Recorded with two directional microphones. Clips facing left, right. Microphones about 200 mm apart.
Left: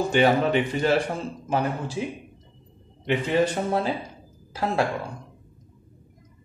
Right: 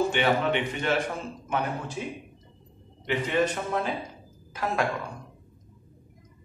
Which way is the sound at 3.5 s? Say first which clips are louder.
Left 4 dB; 30° left (ahead or behind).